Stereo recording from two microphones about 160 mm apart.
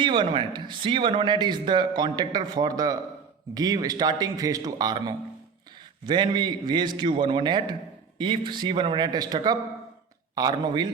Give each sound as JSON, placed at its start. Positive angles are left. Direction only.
{"t": 0.0, "sound": "speech", "side_deg": -30}